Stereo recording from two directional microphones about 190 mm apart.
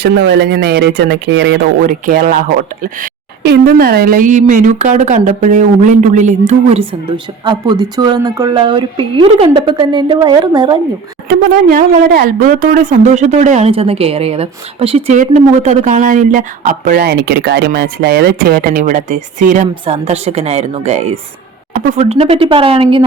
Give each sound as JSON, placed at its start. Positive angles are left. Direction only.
{"t": 0.0, "sound": "speech", "side_deg": -65}
{"t": 1.9, "sound": "speech", "side_deg": -45}
{"t": 11.3, "sound": "speech", "side_deg": -45}
{"t": 19.8, "sound": "speech", "side_deg": -30}
{"t": 21.7, "sound": "speech", "side_deg": -45}
{"t": 22.1, "sound": "speech", "side_deg": -30}